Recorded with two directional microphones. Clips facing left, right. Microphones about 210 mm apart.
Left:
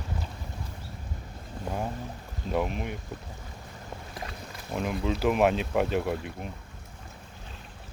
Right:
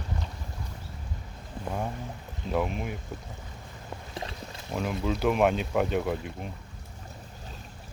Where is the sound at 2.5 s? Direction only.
Centre (ahead or behind).